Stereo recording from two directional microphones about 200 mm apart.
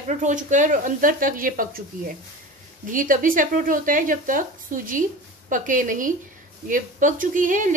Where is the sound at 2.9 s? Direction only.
40° right (ahead or behind).